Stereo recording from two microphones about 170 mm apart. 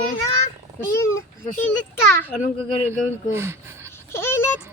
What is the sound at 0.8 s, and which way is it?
Speech, 15° left (ahead or behind).